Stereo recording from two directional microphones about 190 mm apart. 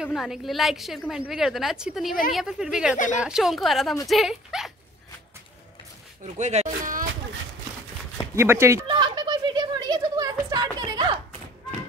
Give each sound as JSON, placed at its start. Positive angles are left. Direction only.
{"t": 0.0, "sound": "a woman's voice", "side_deg": 0}
{"t": 6.3, "sound": "speech", "side_deg": -35}
{"t": 8.4, "sound": "a sound", "side_deg": -15}